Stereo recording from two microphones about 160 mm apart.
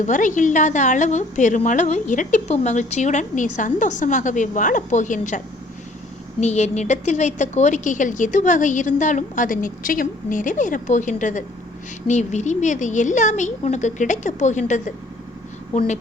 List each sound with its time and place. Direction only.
0.0 s a woman's voice: 50° left (ahead or behind)
6.4 s a woman's voice: 45° left (ahead or behind)